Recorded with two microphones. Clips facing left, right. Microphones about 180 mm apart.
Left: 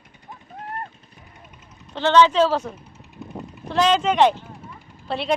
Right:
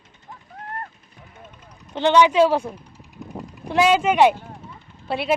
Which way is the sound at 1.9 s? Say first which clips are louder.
Right 1 dB; 15° right (ahead or behind).